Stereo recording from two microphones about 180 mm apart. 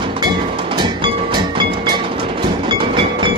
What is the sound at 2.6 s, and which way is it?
Train, 25° right (ahead or behind).